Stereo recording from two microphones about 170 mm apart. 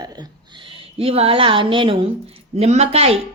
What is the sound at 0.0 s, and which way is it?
A woman's voice, 25° right (ahead or behind).